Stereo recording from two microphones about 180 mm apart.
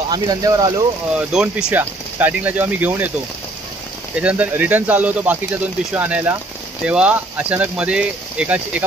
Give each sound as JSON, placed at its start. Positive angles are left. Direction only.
{"t": 0.1, "sound": "speech", "side_deg": -20}
{"t": 1.1, "sound": "speech", "side_deg": -5}
{"t": 4.2, "sound": "speech", "side_deg": -10}